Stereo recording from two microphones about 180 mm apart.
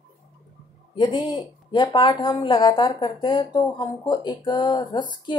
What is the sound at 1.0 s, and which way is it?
Speech, 25° left (ahead or behind).